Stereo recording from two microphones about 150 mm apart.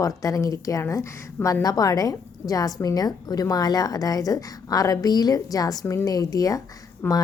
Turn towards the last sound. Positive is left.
turn(degrees=15)  # may be behind; listen again after turning